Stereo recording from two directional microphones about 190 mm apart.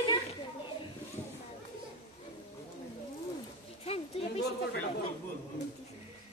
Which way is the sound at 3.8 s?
30° left (ahead or behind).